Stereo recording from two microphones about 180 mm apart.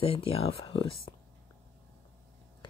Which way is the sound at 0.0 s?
30° left (ahead or behind).